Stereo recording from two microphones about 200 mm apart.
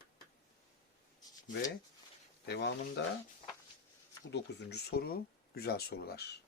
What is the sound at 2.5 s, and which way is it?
Speech, 60° left (ahead or behind).